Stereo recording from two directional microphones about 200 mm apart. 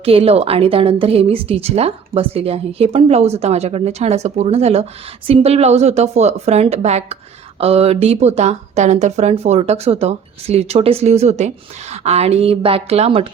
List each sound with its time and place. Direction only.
0.0 s speech: 30° right (ahead or behind)